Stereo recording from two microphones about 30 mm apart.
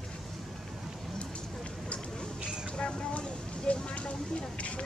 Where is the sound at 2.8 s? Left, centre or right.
Left.